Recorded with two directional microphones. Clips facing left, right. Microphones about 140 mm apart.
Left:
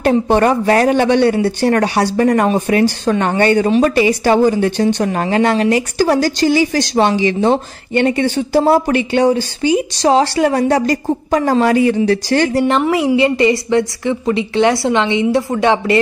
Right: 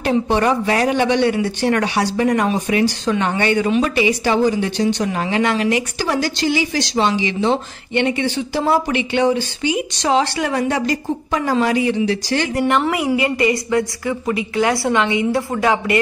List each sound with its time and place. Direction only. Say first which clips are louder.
0.0 s speech: left 4 dB; 50° left (ahead or behind)
1.3 s speech: left 4 dB; 40° left (ahead or behind)
12.5 s a woman's voice: left 4 dB; 30° left (ahead or behind)